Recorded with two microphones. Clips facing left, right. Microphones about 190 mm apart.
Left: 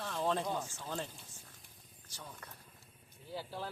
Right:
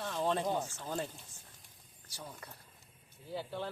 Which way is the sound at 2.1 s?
10° right (ahead or behind).